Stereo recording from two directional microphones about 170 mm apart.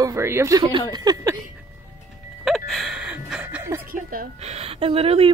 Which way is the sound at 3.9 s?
55° right (ahead or behind).